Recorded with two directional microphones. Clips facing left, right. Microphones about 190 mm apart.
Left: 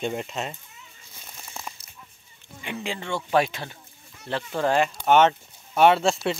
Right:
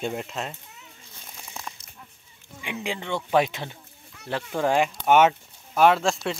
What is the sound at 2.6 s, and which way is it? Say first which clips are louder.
A man's voice: right 1 dB; 15° right (ahead or behind).